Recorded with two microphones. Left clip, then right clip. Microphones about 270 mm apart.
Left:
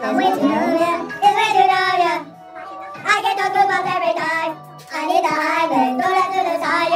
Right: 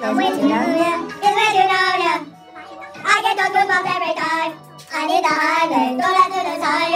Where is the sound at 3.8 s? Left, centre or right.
Centre.